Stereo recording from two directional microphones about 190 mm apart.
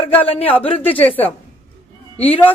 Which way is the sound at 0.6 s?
30° left (ahead or behind).